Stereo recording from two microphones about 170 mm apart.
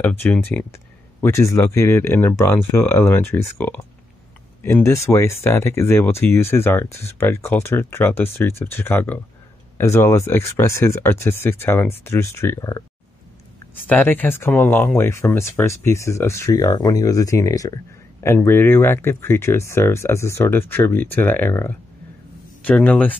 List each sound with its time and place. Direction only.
0.2 s speech: 10° left (ahead or behind)
4.8 s speech: 15° left (ahead or behind)
13.8 s speech: 10° left (ahead or behind)